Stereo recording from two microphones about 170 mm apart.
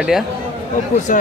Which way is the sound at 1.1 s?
50° left (ahead or behind).